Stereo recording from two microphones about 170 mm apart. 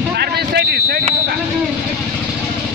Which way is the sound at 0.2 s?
70° right (ahead or behind).